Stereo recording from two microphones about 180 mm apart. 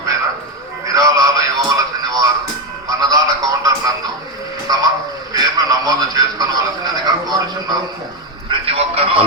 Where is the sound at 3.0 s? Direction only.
20° right (ahead or behind).